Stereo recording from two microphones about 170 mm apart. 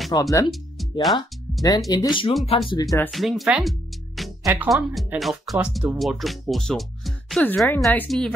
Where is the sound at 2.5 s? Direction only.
35° left (ahead or behind).